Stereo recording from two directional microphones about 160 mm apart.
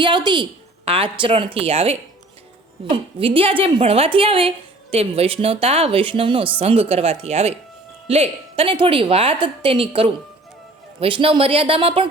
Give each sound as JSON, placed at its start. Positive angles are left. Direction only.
{"t": 0.0, "sound": "a woman's voice", "side_deg": -30}